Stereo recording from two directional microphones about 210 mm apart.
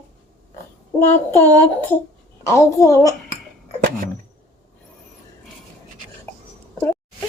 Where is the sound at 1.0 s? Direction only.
10° left (ahead or behind).